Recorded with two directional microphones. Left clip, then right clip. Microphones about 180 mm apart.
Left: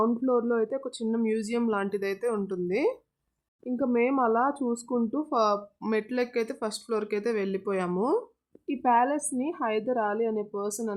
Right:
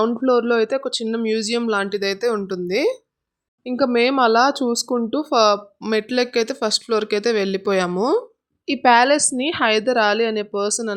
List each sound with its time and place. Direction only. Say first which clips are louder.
0.0 s speech: right 8 dB; 30° right (ahead or behind)